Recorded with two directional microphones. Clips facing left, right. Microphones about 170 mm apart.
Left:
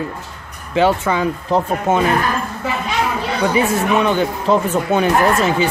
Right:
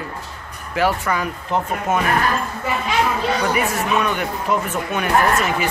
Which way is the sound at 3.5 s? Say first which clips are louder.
Left 4 dB; 30° left (ahead or behind).